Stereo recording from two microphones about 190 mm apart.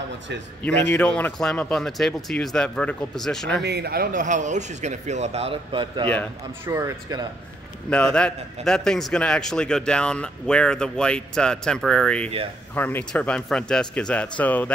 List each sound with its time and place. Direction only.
0.7 s speech: 5° left (ahead or behind)
3.6 s speech: 60° right (ahead or behind); by 6.0 s 25° right (ahead or behind)
6.6 s speech: 15° right (ahead or behind)
7.9 s speech: 5° left (ahead or behind)